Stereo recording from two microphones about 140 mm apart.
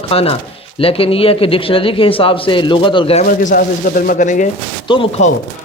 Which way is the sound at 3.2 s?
70° left (ahead or behind).